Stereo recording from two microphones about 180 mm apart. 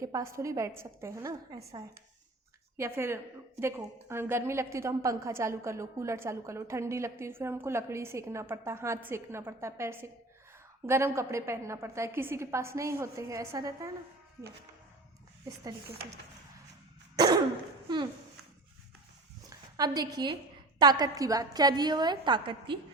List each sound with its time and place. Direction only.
0.0 s a woman's voice: 15° right (ahead or behind)
2.7 s a woman's voice: 15° right (ahead or behind)
17.2 s cough: 20° right (ahead or behind)
17.8 s a sound: 25° right (ahead or behind)
19.5 s a sound: 20° right (ahead or behind)
20.7 s a woman's voice: 25° right (ahead or behind)